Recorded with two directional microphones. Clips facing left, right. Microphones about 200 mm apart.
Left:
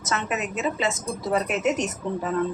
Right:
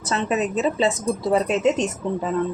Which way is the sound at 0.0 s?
30° right (ahead or behind).